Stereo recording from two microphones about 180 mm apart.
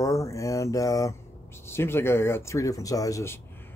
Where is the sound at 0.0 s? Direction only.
15° left (ahead or behind).